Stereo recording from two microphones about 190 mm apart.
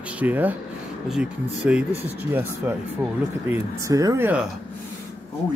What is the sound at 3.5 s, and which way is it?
Speech, 15° right (ahead or behind).